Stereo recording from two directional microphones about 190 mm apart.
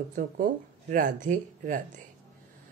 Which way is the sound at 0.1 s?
45° right (ahead or behind).